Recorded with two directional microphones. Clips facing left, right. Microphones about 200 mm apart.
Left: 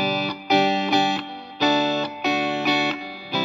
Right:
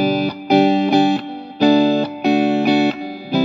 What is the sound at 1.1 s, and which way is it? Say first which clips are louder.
Music: right 8 dB; 45° right (ahead or behind).